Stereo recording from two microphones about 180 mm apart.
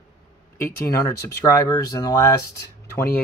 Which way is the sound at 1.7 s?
20° left (ahead or behind).